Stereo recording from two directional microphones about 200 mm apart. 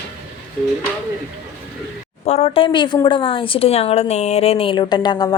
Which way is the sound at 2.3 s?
30° left (ahead or behind).